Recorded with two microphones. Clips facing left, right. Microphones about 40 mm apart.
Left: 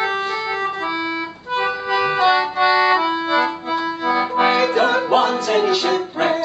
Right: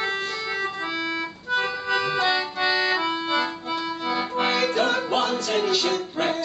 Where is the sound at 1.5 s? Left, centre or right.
Centre.